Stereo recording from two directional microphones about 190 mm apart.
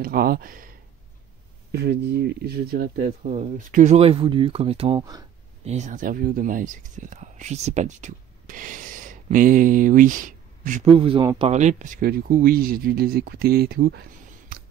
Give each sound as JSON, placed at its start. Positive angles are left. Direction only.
{"t": 0.0, "sound": "speech", "side_deg": -50}
{"t": 1.7, "sound": "speech", "side_deg": -60}
{"t": 3.3, "sound": "speech", "side_deg": -40}
{"t": 5.7, "sound": "speech", "side_deg": -40}
{"t": 10.9, "sound": "speech", "side_deg": -30}